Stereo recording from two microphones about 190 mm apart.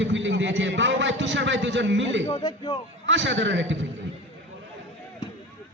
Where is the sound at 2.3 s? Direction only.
25° left (ahead or behind).